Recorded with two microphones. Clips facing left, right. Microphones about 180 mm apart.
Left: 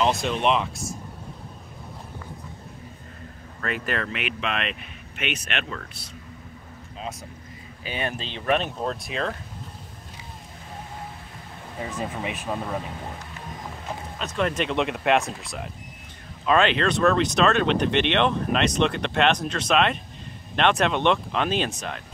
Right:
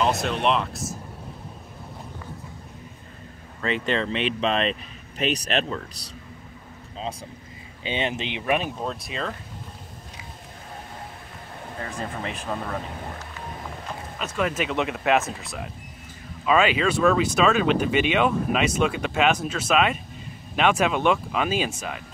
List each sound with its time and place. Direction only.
0.0 s speech: centre (ahead or behind)
3.6 s speech: 25° right (ahead or behind)
7.8 s speech: 20° right (ahead or behind); by 9.4 s centre (ahead or behind)
11.8 s speech: 5° left (ahead or behind)
14.1 s speech: 5° right (ahead or behind)